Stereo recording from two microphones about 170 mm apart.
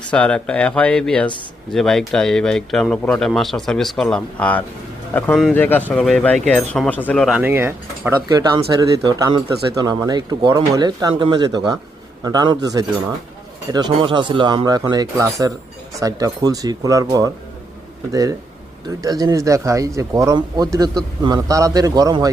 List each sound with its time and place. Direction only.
0.1 s speech: 5° left (ahead or behind)
7.3 s speech: 10° right (ahead or behind)